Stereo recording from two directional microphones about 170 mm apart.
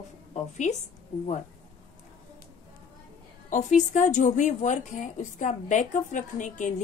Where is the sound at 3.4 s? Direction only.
45° left (ahead or behind).